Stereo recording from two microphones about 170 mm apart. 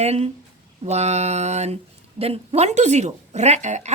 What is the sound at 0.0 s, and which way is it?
Speech, 40° right (ahead or behind).